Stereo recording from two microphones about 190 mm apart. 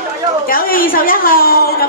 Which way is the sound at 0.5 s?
50° left (ahead or behind).